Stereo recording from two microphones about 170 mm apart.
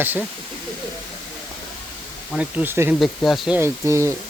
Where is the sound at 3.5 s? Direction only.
15° right (ahead or behind).